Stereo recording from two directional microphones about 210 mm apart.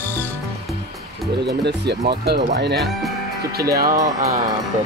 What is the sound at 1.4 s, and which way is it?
Speech, 55° right (ahead or behind).